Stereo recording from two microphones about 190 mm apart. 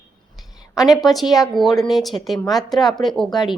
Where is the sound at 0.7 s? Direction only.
Centre (ahead or behind).